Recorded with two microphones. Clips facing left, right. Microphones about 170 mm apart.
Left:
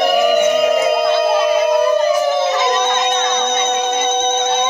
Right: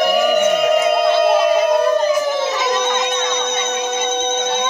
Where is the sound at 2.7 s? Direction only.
10° right (ahead or behind).